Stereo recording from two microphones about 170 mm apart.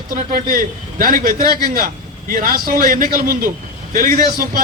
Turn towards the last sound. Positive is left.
turn(degrees=-60)  # may be behind; listen again after turning